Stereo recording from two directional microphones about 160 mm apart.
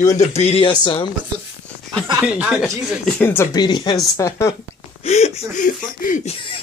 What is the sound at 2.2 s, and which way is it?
Speech, 5° right (ahead or behind).